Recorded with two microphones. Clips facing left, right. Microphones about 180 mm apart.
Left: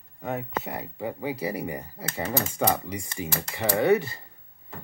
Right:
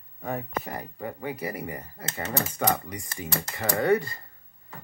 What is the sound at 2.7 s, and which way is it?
Speech, 25° left (ahead or behind).